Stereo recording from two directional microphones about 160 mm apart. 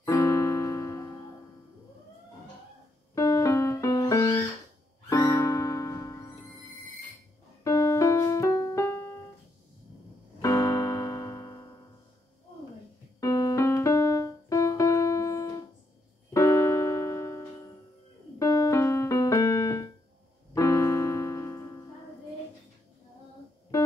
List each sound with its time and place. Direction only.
0.0 s music: 15° left (ahead or behind)
3.2 s music: 20° left (ahead or behind)
7.6 s music: 20° left (ahead or behind)
10.4 s keyboard: 20° left (ahead or behind)
13.2 s music: 20° left (ahead or behind)
16.3 s keyboard: 20° left (ahead or behind)
20.5 s piano: 20° left (ahead or behind)